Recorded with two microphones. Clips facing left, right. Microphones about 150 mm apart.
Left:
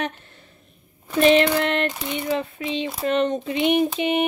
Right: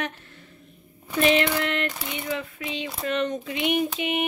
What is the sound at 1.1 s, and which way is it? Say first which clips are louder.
A woman's voice: left 5 dB; 35° left (ahead or behind).